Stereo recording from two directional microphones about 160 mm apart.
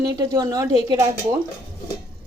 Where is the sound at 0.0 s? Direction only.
20° right (ahead or behind).